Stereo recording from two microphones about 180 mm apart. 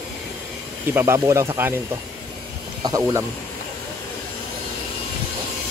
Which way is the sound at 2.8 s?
20° right (ahead or behind).